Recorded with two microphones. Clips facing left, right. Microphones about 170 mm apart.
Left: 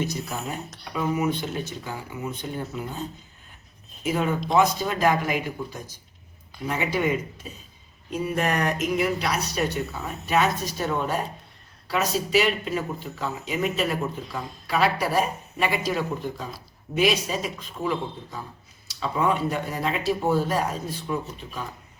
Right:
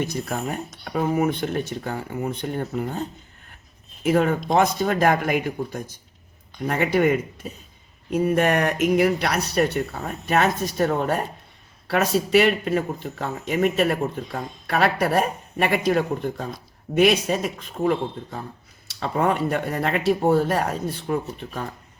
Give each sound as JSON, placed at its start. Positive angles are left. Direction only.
{"t": 0.0, "sound": "speech", "side_deg": -60}